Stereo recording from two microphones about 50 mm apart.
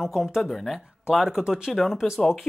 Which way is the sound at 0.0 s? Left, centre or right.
Centre.